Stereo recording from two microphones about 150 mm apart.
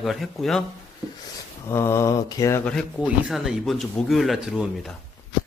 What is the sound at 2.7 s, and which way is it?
Speech, 5° left (ahead or behind).